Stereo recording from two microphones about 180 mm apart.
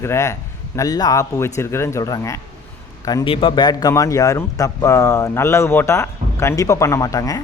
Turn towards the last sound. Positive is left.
turn(degrees=20)  # may be behind; listen again after turning